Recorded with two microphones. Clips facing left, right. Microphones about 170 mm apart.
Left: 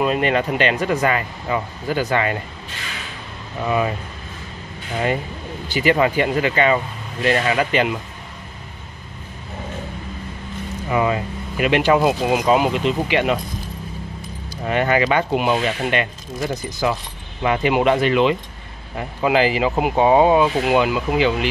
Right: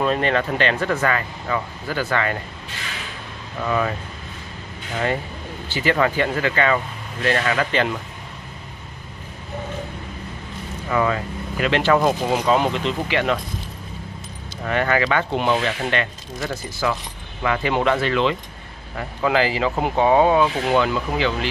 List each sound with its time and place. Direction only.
0.0 s speech: 15° left (ahead or behind)
3.6 s speech: 15° left (ahead or behind)
5.7 s speech: 15° left (ahead or behind)
10.9 s speech: 20° left (ahead or behind)
14.6 s speech: 20° left (ahead or behind)